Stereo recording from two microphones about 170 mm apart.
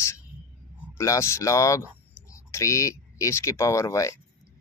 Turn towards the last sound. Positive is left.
turn(degrees=20)  # may be behind; listen again after turning